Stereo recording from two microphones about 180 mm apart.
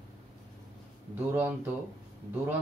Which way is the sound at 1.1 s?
10° right (ahead or behind).